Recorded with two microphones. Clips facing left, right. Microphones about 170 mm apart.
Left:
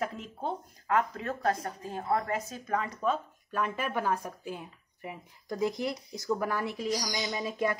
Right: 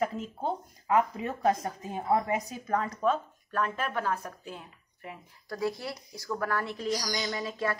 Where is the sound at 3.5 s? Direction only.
10° left (ahead or behind).